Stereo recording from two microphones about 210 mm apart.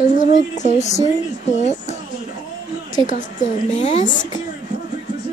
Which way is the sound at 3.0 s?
40° left (ahead or behind).